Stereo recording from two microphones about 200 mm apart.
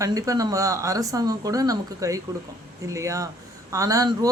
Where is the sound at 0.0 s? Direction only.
15° right (ahead or behind).